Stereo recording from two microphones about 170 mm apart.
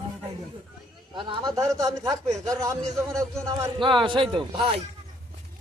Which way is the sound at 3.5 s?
30° right (ahead or behind).